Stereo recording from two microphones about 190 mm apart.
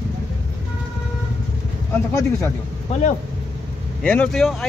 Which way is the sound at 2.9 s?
40° left (ahead or behind).